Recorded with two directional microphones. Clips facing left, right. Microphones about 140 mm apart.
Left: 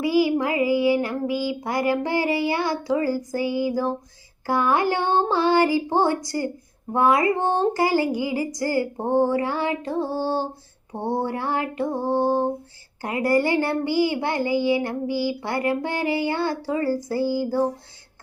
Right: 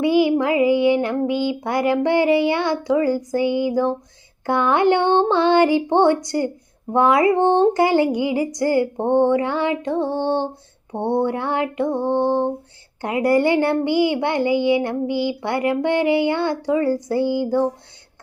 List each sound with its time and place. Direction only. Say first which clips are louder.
0.0 s speech: right 4 dB; 25° right (ahead or behind)
12.0 s female singing: right 1 dB; 5° left (ahead or behind)
13.0 s speech: right 4 dB; 20° right (ahead or behind)